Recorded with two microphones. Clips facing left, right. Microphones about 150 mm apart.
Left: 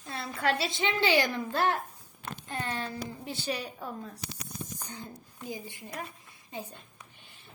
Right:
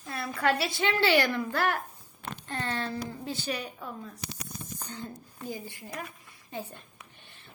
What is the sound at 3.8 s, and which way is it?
Speech, 45° left (ahead or behind).